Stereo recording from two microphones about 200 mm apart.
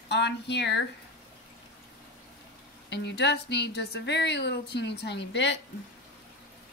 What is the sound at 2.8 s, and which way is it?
A woman's voice, 60° left (ahead or behind).